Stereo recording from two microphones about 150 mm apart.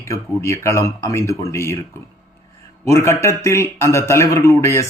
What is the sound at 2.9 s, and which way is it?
Speech, 20° left (ahead or behind).